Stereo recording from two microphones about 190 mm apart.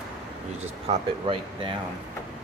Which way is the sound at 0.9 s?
25° right (ahead or behind).